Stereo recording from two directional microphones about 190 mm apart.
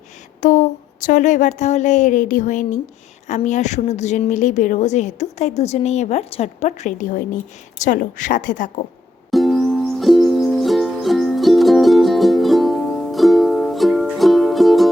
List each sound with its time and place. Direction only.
0.4 s a woman's voice: 40° left (ahead or behind)
9.3 s music: centre (ahead or behind)